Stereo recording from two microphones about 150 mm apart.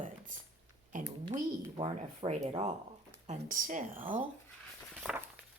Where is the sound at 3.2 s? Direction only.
60° right (ahead or behind).